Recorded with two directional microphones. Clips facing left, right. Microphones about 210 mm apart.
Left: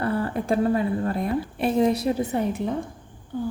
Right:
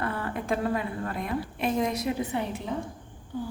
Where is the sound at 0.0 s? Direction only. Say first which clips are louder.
Left 6 dB; 35° left (ahead or behind).